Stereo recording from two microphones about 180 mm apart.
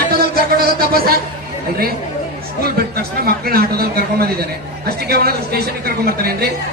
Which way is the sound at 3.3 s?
60° right (ahead or behind).